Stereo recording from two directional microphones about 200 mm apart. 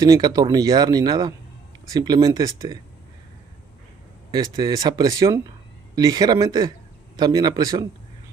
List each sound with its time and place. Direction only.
0.0 s speech: 15° right (ahead or behind)
4.3 s speech: 20° right (ahead or behind)